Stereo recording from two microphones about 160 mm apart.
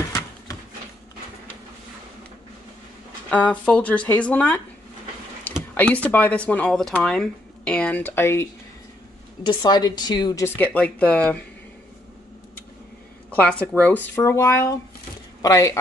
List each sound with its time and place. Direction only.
3.3 s speech: 10° left (ahead or behind)
5.5 s a sound: 10° left (ahead or behind)
5.8 s speech: 10° left (ahead or behind)
9.5 s a woman's voice: 25° left (ahead or behind)
10.4 s speech: 10° left (ahead or behind)
13.3 s a woman's voice: 10° left (ahead or behind)